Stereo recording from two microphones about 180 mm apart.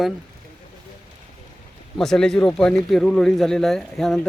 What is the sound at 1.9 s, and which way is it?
Speech, 5° left (ahead or behind).